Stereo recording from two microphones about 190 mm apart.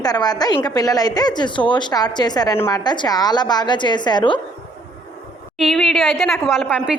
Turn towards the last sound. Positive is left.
turn(degrees=0)  # may be behind; listen again after turning